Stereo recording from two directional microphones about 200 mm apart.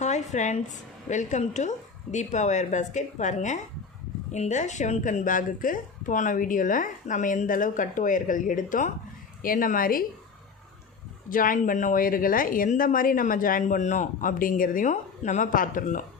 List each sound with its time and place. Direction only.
0.0 s a sound: 35° left (ahead or behind)
1.0 s speech: 35° left (ahead or behind)
11.3 s speech: 45° left (ahead or behind)